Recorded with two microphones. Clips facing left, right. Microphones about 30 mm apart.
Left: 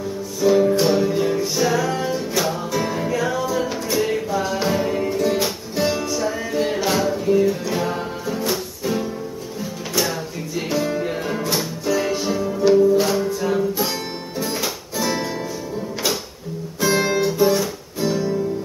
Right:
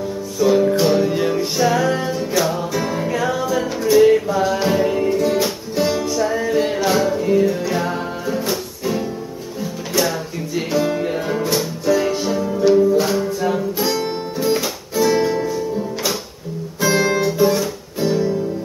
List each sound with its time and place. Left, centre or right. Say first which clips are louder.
0.4 s music: right 1 dB; centre
1.0 s music: right 1 dB; right; by 3.1 s centre
3.1 s music: right 2 dB; right
3.4 s music: right 4 dB; centre
10.7 s music: right 3 dB; centre
15.0 s music: right 8 dB; centre
17.0 s guitar: right 2 dB; centre